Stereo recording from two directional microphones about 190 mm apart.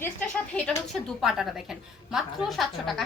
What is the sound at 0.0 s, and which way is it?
Speech, 5° left (ahead or behind).